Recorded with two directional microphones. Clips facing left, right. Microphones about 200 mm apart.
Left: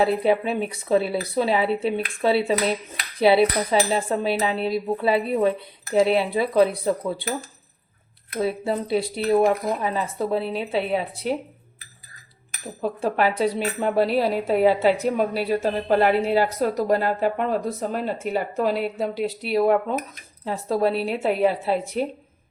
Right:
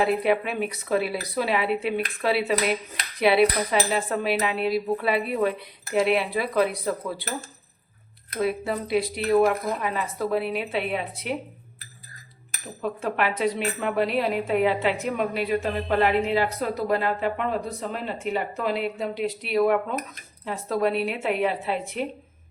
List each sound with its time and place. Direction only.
0.0 s cutlery: 30° left (ahead or behind)
8.4 s cutlery: 30° left (ahead or behind)
12.8 s a woman's voice: 35° left (ahead or behind)